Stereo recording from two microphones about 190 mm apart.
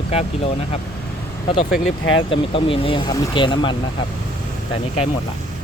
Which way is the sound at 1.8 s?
90° left.